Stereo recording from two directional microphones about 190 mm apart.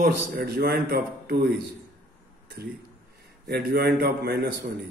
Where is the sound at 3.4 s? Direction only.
55° right (ahead or behind).